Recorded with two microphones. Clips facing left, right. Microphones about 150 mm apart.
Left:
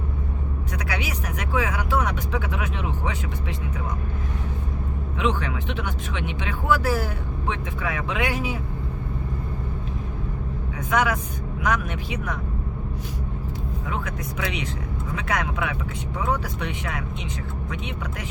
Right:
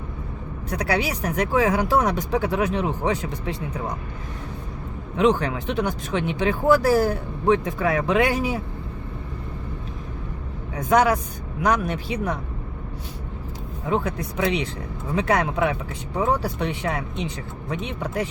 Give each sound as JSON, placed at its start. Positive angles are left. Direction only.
{"t": 0.7, "sound": "speech", "side_deg": -35}
{"t": 5.1, "sound": "speech", "side_deg": -40}
{"t": 10.8, "sound": "speech", "side_deg": -35}
{"t": 13.8, "sound": "speech", "side_deg": -30}